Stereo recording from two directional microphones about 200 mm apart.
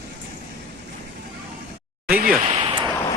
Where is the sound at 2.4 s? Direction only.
30° right (ahead or behind).